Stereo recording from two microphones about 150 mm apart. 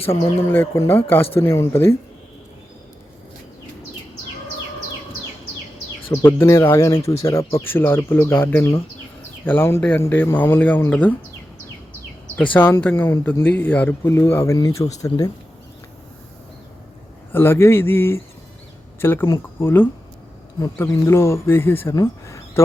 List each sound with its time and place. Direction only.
0.0 s speech: 40° left (ahead or behind)
0.4 s speech: 15° left (ahead or behind)
6.1 s speech: 15° left (ahead or behind)
12.4 s speech: 10° left (ahead or behind)
17.3 s speech: 15° left (ahead or behind)